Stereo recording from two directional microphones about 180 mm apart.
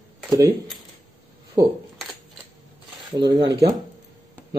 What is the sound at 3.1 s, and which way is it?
Speech, 20° right (ahead or behind).